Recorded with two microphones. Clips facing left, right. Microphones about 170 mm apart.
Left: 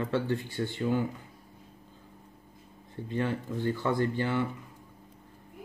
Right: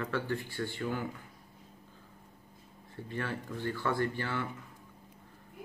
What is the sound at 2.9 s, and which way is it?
Speech, 20° left (ahead or behind).